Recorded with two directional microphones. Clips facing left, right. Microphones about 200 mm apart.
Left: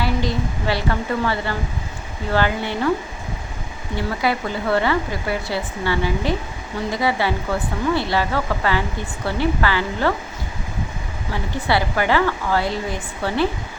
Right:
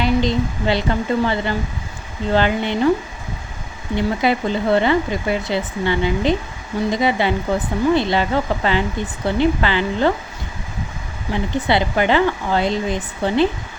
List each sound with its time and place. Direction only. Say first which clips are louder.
0.0 s a woman's voice: right 4 dB; 20° right (ahead or behind)
3.9 s speech: right 4 dB; 20° right (ahead or behind)
11.3 s speech: right 3 dB; 20° right (ahead or behind)